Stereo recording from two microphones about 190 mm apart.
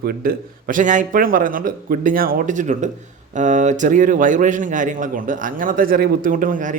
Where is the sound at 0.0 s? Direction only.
50° right (ahead or behind).